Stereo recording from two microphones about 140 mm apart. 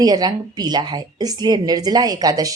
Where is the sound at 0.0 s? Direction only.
25° right (ahead or behind).